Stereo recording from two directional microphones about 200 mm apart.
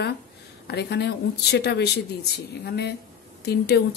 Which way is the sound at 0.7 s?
55° left (ahead or behind).